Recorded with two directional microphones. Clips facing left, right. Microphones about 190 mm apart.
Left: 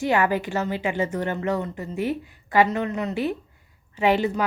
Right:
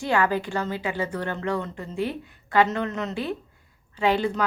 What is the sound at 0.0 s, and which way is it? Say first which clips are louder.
A woman's voice: left 2 dB; 20° left (ahead or behind).